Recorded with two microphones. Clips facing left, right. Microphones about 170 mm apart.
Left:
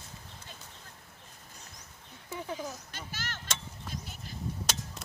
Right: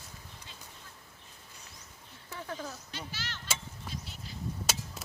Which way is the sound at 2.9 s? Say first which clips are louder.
Even; 45° left (ahead or behind).